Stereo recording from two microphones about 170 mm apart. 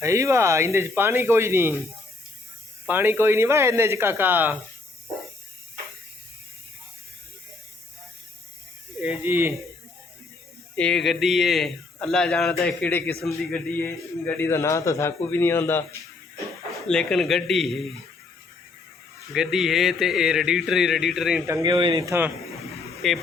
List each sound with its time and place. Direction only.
0.0 s speech: 15° right (ahead or behind)
2.8 s speech: 10° right (ahead or behind)
9.0 s speech: 10° right (ahead or behind)
10.8 s a man's voice: 5° left (ahead or behind)
16.9 s a man's voice: 5° left (ahead or behind)
19.3 s a man's voice: 5° right (ahead or behind)
21.4 s speech: 20° right (ahead or behind)
23.0 s a man's voice: centre (ahead or behind)